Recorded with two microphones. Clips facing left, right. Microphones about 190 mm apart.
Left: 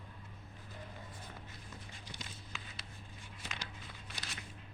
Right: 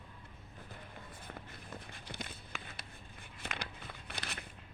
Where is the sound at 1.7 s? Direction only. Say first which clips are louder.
Right 7 dB; 60° right (ahead or behind).